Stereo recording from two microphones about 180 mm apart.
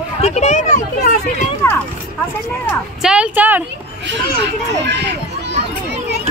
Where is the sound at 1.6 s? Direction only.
15° left (ahead or behind).